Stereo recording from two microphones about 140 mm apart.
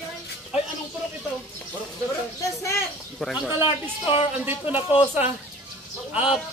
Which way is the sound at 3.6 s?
40° left (ahead or behind).